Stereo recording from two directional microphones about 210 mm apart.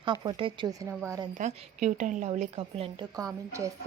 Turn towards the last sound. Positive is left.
turn(degrees=-15)  # may be behind; listen again after turning